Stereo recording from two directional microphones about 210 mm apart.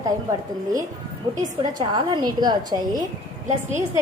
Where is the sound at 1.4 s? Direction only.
35° right (ahead or behind).